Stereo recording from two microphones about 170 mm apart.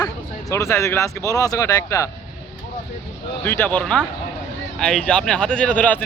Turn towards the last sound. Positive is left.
turn(degrees=10)  # may be behind; listen again after turning